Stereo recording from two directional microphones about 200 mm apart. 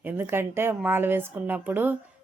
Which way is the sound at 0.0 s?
10° right (ahead or behind).